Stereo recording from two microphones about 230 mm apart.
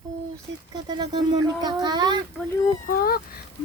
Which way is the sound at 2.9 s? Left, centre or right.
Left.